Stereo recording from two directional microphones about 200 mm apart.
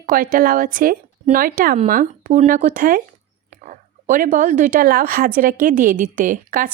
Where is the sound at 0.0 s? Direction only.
45° right (ahead or behind).